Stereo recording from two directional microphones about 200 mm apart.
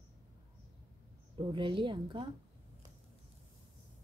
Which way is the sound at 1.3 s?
25° right (ahead or behind).